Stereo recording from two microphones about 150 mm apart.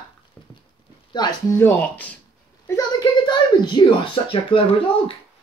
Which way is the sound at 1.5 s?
15° left (ahead or behind).